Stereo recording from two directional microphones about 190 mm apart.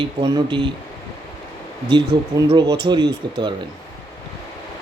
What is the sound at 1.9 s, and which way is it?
A man's voice, 25° right (ahead or behind).